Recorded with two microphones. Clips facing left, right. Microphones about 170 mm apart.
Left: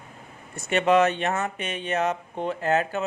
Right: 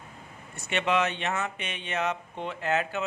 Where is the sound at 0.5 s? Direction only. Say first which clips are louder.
Left 7 dB; 45° left (ahead or behind).